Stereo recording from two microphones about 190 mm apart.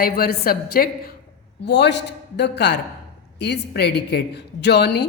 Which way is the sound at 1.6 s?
65° left (ahead or behind).